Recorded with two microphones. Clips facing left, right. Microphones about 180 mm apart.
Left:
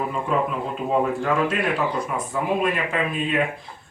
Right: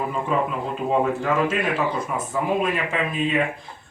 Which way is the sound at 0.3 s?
Centre (ahead or behind).